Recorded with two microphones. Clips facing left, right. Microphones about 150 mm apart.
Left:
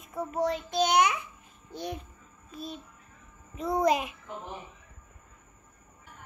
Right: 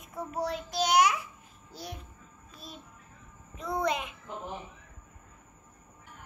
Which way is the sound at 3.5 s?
35° left (ahead or behind).